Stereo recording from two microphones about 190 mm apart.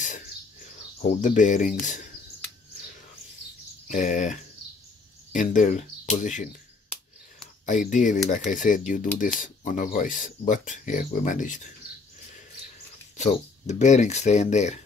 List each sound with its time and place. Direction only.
1.2 s speech: 40° left (ahead or behind)
3.8 s speech: 40° left (ahead or behind)
7.6 s speech: 40° left (ahead or behind)
13.2 s speech: 40° left (ahead or behind)